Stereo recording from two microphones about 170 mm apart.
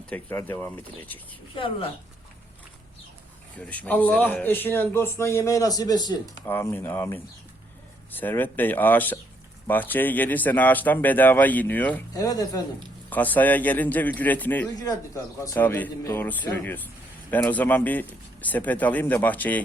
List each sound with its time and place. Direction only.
0.1 s speech: 10° left (ahead or behind)
1.5 s speech: 30° left (ahead or behind)
3.6 s speech: 10° left (ahead or behind)
12.1 s speech: 20° left (ahead or behind)
13.1 s speech: 10° left (ahead or behind)